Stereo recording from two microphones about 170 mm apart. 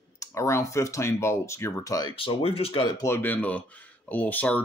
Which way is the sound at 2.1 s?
35° left (ahead or behind).